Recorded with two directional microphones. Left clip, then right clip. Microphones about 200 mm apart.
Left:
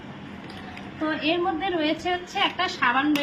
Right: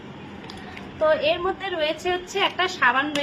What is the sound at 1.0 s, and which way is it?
A woman's voice, 55° right (ahead or behind).